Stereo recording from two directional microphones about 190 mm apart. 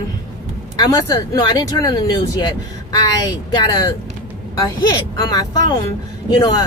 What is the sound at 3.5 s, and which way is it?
Speech, 20° left (ahead or behind).